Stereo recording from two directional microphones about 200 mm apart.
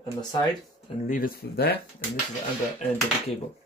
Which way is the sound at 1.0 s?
45° left (ahead or behind).